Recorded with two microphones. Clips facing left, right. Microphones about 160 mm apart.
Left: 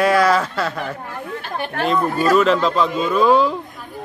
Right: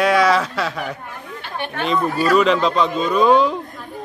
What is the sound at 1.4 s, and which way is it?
Speech, 40° left (ahead or behind).